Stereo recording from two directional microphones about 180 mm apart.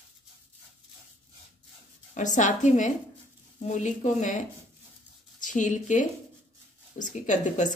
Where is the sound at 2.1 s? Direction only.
45° left (ahead or behind).